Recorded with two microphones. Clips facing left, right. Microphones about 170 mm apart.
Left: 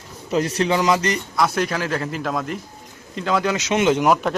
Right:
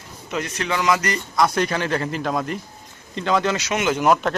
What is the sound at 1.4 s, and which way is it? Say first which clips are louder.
A man's voice: right 2 dB; centre (ahead or behind).